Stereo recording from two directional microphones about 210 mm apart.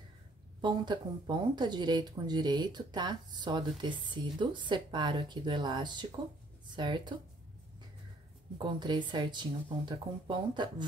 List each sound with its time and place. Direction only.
0.6 s speech: 20° right (ahead or behind)
8.5 s speech: 20° right (ahead or behind)